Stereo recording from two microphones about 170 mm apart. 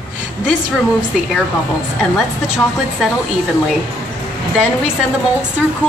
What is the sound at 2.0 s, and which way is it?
A woman's voice, centre (ahead or behind).